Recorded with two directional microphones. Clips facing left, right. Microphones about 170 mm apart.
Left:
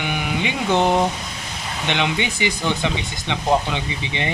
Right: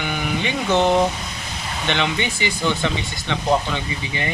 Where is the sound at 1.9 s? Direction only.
15° left (ahead or behind).